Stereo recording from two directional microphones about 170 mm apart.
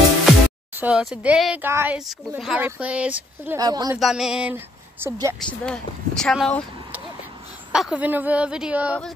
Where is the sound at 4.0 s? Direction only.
Centre (ahead or behind).